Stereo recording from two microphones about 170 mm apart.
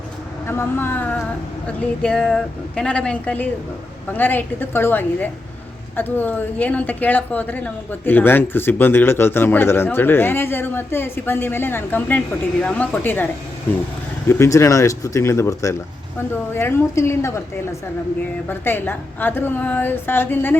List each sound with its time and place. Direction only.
0.4 s a woman's voice: 15° left (ahead or behind)